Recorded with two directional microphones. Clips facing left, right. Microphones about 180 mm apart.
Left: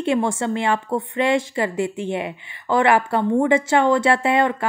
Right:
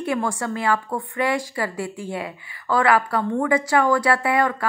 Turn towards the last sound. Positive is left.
turn(degrees=25)  # may be behind; listen again after turning